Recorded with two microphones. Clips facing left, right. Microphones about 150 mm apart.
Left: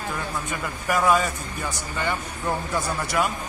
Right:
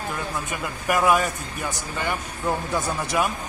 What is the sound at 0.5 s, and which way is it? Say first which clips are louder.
Speech: right 1 dB; 15° right (ahead or behind).